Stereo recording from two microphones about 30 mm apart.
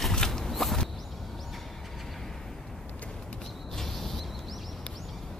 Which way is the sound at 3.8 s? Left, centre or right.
Centre.